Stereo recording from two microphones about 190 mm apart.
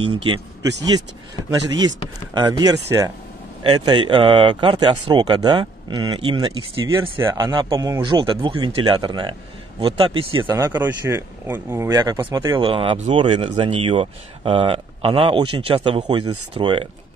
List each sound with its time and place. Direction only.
0.0 s speech: 25° right (ahead or behind)
2.3 s speech: 20° right (ahead or behind)
10.4 s speech: 15° right (ahead or behind)